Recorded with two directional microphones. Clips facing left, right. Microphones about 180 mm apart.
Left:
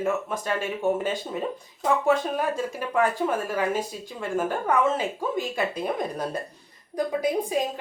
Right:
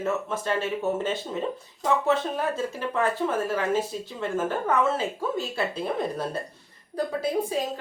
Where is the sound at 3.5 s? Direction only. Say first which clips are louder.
Right 1 dB; 15° left (ahead or behind).